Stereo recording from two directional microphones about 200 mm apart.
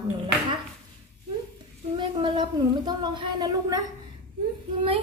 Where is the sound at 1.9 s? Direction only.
25° right (ahead or behind).